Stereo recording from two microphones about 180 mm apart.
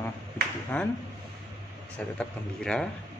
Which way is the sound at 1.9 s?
5° left (ahead or behind).